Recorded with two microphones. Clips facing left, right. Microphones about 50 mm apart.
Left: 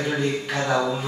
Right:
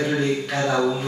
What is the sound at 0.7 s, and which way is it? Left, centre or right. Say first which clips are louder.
Speech: right 1 dB; centre.